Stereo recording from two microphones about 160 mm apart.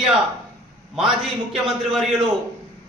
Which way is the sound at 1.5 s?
Centre (ahead or behind).